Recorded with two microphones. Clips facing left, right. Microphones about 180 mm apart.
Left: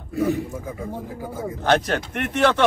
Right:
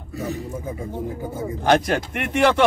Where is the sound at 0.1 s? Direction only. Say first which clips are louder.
Left 7 dB; 55° left (ahead or behind).